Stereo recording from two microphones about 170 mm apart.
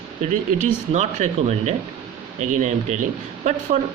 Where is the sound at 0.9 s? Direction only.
40° right (ahead or behind).